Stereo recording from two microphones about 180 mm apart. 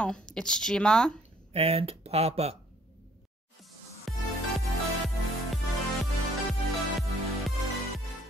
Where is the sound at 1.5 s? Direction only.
35° right (ahead or behind).